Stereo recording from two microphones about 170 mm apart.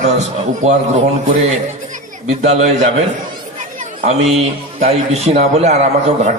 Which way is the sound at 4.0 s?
40° right (ahead or behind).